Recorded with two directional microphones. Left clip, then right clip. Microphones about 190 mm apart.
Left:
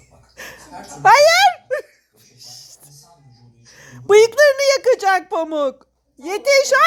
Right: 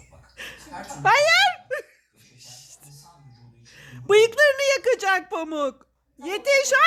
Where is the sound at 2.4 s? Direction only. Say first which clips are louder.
Left 7 dB; 10° left (ahead or behind).